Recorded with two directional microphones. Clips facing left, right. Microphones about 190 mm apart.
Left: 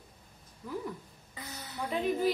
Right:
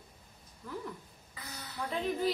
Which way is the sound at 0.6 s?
10° left (ahead or behind).